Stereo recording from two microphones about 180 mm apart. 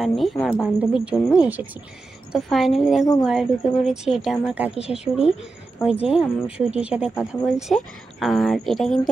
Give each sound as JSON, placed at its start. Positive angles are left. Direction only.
{"t": 0.0, "sound": "speech", "side_deg": 0}
{"t": 5.9, "sound": "speech", "side_deg": 30}
{"t": 6.7, "sound": "speech", "side_deg": -5}